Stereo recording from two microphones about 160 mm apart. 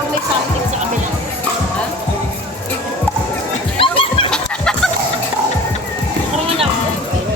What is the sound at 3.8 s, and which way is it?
Music, 35° left (ahead or behind).